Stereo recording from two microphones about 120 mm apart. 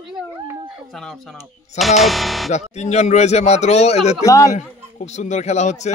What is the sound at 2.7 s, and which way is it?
A man's voice, 70° left (ahead or behind).